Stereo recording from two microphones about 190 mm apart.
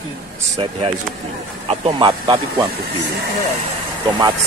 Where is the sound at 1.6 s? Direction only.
30° right (ahead or behind).